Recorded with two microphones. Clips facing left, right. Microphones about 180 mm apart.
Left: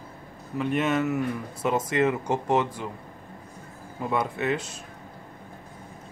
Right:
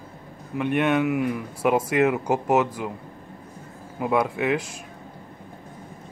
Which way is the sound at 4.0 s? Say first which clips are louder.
Right 4 dB; 10° right (ahead or behind).